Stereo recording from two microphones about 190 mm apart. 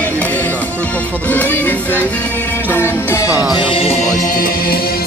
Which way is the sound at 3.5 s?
25° left (ahead or behind).